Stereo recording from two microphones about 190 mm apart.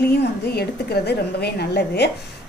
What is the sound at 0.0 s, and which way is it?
A woman's voice, 60° left (ahead or behind).